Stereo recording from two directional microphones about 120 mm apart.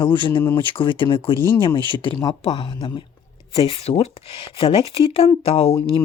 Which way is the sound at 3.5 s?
55° left (ahead or behind).